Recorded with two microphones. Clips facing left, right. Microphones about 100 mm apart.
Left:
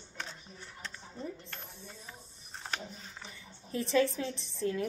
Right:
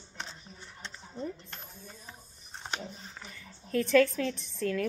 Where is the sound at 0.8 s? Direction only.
25° right (ahead or behind).